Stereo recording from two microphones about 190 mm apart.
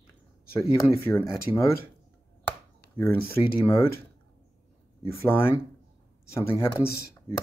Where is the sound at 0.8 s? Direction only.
10° left (ahead or behind).